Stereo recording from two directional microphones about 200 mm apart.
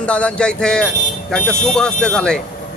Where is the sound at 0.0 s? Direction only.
5° left (ahead or behind).